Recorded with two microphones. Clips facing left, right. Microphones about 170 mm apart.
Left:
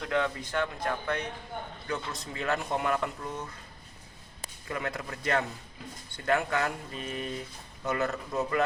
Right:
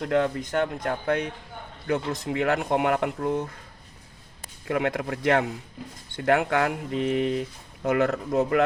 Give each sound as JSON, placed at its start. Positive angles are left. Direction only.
{"t": 0.0, "sound": "speech", "side_deg": -50}
{"t": 4.7, "sound": "speech", "side_deg": -65}
{"t": 7.9, "sound": "speech", "side_deg": -65}